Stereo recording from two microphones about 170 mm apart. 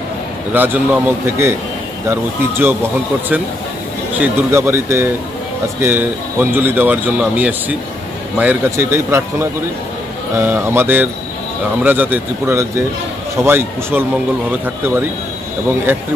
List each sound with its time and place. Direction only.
0.5 s speech: 10° right (ahead or behind)